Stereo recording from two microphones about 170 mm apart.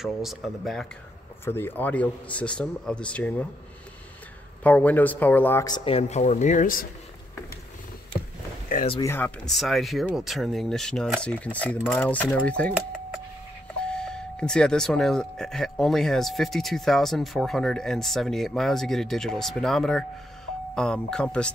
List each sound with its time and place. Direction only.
0.0 s speech: centre (ahead or behind)
1.4 s speech: 15° left (ahead or behind)
4.6 s speech: 10° left (ahead or behind)
5.9 s speech: 40° left (ahead or behind)
9.0 s speech: 15° left (ahead or behind)
9.5 s speech: centre (ahead or behind)
13.8 s speech: 5° left (ahead or behind)